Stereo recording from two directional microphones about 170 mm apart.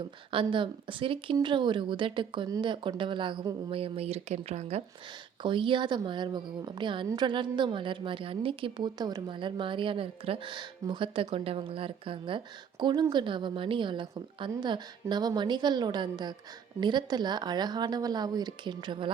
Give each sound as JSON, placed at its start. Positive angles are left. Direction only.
{"t": 0.3, "sound": "a woman's voice", "side_deg": -30}
{"t": 5.4, "sound": "a woman's voice", "side_deg": -30}